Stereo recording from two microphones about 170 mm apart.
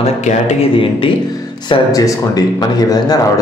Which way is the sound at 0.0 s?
40° left (ahead or behind).